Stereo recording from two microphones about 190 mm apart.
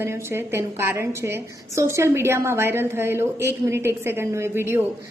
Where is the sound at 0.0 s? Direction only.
15° right (ahead or behind).